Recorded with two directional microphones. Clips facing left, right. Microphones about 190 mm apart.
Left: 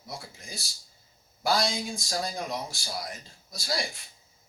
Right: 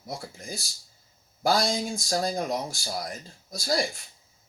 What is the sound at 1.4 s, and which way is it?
Speech, 45° right (ahead or behind).